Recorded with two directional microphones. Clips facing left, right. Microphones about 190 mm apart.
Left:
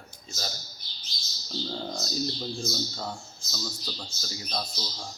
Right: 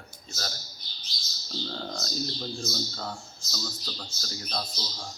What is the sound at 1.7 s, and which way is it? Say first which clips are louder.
A man's voice: left 2 dB; 10° left (ahead or behind).